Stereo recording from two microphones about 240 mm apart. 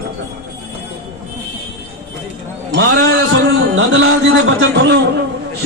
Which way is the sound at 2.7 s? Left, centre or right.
Right.